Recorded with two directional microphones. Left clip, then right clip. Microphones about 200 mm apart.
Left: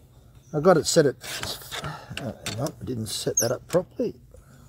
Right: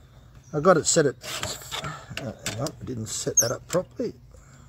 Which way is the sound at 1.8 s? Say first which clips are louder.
Even; 20° left (ahead or behind).